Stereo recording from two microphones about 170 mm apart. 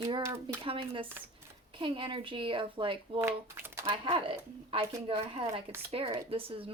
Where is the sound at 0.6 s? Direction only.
30° right (ahead or behind).